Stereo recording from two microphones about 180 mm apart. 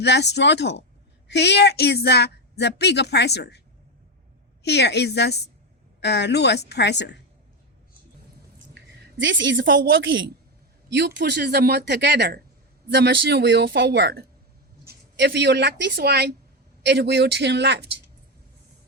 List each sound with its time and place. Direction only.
0.0 s speech: 70° left (ahead or behind)
4.6 s speech: 70° left (ahead or behind)
8.7 s a sound: 90° right
9.9 s a woman's voice: 90° right
10.9 s speech: 70° right (ahead or behind)